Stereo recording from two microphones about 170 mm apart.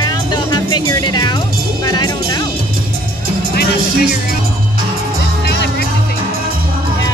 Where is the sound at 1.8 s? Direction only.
25° left (ahead or behind).